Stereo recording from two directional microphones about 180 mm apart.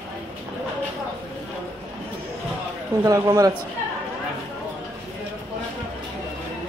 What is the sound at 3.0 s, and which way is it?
Speech, 20° right (ahead or behind).